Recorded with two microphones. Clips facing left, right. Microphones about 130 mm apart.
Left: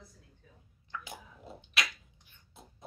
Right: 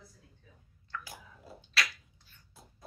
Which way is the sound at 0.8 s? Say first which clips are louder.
Even; 20° left (ahead or behind).